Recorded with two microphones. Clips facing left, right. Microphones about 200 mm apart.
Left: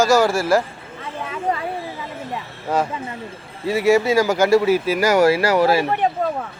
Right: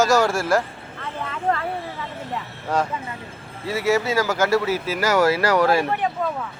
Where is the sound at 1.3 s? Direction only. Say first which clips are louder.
Even; 15° left (ahead or behind).